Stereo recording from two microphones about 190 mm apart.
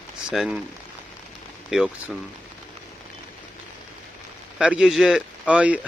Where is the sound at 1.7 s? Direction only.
5° right (ahead or behind).